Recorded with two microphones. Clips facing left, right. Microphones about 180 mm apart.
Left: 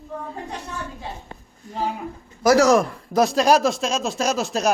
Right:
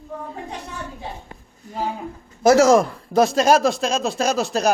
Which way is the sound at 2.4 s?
25° right (ahead or behind).